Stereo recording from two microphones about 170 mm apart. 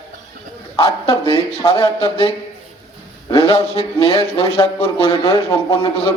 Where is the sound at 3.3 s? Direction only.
35° left (ahead or behind).